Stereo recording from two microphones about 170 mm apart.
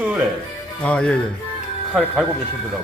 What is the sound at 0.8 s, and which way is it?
Speech, 5° left (ahead or behind).